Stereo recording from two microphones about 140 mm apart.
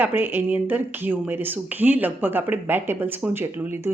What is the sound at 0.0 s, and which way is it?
Speech, 15° right (ahead or behind).